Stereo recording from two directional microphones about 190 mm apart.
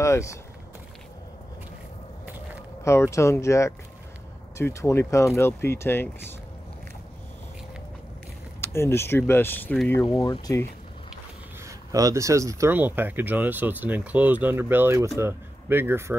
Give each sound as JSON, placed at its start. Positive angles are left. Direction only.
{"t": 0.0, "sound": "speech", "side_deg": 15}
{"t": 2.8, "sound": "speech", "side_deg": 15}
{"t": 8.5, "sound": "speech", "side_deg": 15}
{"t": 10.0, "sound": "speech", "side_deg": 25}
{"t": 11.6, "sound": "speech", "side_deg": -15}